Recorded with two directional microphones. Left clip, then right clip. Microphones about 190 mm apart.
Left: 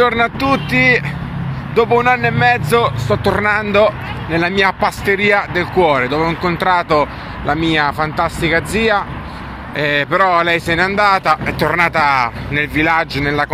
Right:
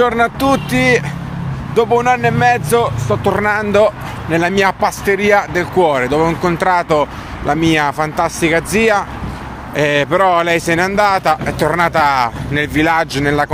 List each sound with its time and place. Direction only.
0.0 s a man's voice: 20° right (ahead or behind)
0.4 s a man's voice: 35° right (ahead or behind)